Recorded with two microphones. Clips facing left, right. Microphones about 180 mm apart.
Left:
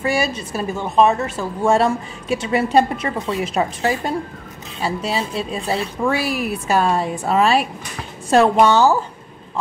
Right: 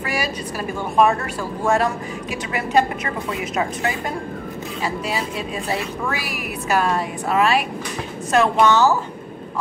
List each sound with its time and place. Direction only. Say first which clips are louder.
0.0 s a woman's voice: left 5 dB; 25° left (ahead or behind)